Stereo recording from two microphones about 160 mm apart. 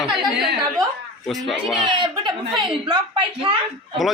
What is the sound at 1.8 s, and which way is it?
Speech, 30° right (ahead or behind).